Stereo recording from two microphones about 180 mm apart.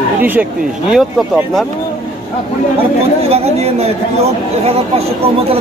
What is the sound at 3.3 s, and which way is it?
Speech, 35° right (ahead or behind).